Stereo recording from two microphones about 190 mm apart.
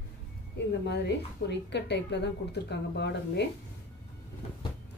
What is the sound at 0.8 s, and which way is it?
A woman's voice, 65° left (ahead or behind).